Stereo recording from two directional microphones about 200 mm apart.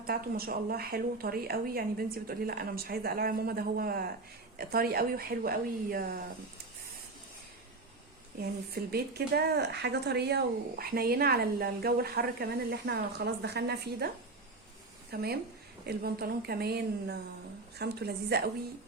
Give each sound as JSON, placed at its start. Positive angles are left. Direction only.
{"t": 0.0, "sound": "speech", "side_deg": -50}
{"t": 8.4, "sound": "speech", "side_deg": -50}
{"t": 15.1, "sound": "a woman's voice", "side_deg": -50}